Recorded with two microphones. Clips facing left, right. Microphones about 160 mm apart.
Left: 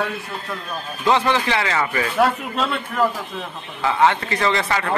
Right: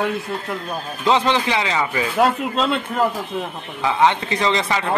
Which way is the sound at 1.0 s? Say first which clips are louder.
Right 1 dB; 20° right (ahead or behind).